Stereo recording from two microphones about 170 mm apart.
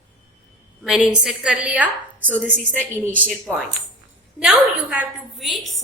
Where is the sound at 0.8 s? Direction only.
Centre (ahead or behind).